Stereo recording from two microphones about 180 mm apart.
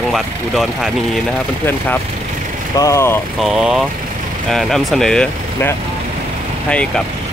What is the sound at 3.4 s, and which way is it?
Speech, 5° right (ahead or behind).